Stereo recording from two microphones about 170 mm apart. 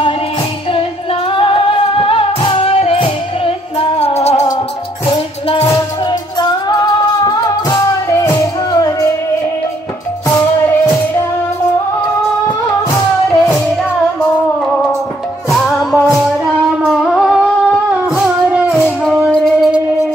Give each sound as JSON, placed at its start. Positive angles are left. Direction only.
{"t": 1.3, "sound": "music", "side_deg": 30}
{"t": 5.6, "sound": "music", "side_deg": 20}
{"t": 15.8, "sound": "music", "side_deg": 0}
{"t": 19.0, "sound": "music", "side_deg": 5}